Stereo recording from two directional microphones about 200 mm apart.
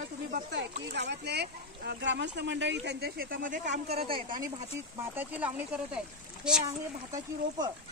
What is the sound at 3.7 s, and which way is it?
Speech, 30° right (ahead or behind).